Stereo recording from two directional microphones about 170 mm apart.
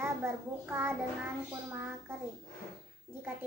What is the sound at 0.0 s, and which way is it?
A child's voice, 10° right (ahead or behind).